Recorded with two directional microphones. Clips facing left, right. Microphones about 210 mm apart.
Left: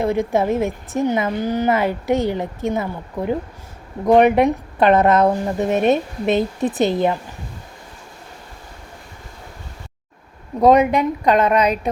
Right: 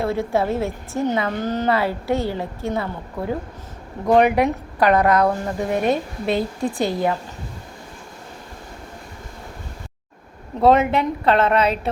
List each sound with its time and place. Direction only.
0.0 s a woman's voice: 15° left (ahead or behind)
10.6 s a woman's voice: 15° left (ahead or behind)